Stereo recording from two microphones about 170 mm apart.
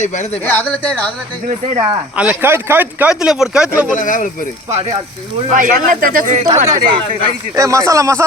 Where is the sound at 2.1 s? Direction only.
10° right (ahead or behind).